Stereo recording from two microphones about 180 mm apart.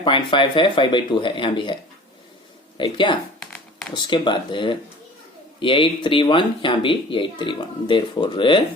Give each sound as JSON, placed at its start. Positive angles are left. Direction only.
{"t": 0.0, "sound": "speech", "side_deg": 30}
{"t": 2.7, "sound": "speech", "side_deg": 25}
{"t": 3.4, "sound": "a sound", "side_deg": 5}
{"t": 3.9, "sound": "speech", "side_deg": 25}